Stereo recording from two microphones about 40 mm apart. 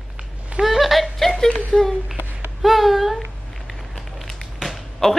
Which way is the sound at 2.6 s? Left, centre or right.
Centre.